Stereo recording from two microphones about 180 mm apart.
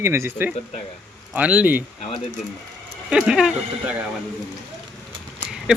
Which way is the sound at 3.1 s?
5° right (ahead or behind).